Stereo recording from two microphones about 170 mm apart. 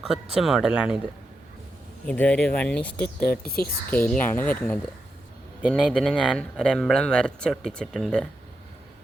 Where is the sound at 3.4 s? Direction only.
65° left (ahead or behind).